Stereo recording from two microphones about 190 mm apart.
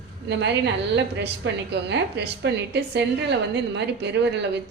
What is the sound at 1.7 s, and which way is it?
A woman's voice, 65° right (ahead or behind).